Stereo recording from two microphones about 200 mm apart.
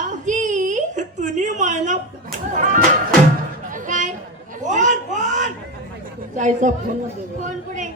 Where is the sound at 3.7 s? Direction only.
40° right (ahead or behind).